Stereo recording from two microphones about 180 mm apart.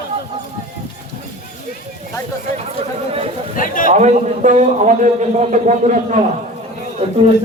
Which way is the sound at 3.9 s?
45° right (ahead or behind).